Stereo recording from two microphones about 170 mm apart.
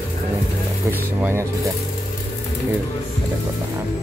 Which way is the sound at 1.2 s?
15° right (ahead or behind).